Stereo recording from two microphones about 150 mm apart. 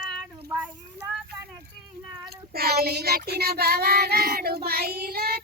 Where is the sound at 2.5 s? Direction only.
90° right.